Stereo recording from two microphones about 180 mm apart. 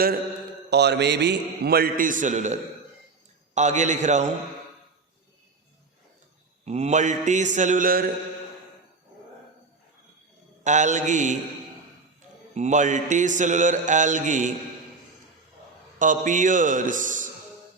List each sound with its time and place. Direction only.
0.7 s a man's voice: 70° right (ahead or behind); by 4.3 s 40° right (ahead or behind)
6.7 s mantra: 40° right (ahead or behind)
10.6 s mantra: 40° right (ahead or behind)
12.5 s mantra: 45° right (ahead or behind)
16.0 s mantra: 45° right (ahead or behind)